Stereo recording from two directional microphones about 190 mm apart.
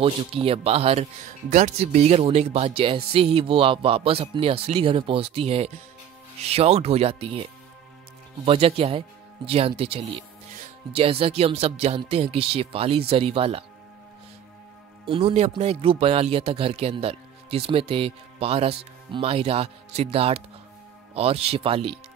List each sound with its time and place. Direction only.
0.0 s speech: 30° right (ahead or behind)
8.5 s speech: 30° right (ahead or behind)
15.0 s speech: 30° right (ahead or behind)